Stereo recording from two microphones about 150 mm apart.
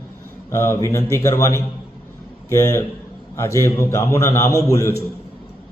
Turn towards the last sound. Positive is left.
turn(degrees=20)  # may be behind; listen again after turning